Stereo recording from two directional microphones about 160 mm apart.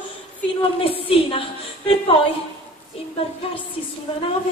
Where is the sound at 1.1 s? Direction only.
35° left (ahead or behind).